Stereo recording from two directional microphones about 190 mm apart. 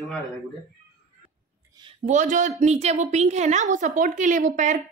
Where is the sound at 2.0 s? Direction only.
40° right (ahead or behind).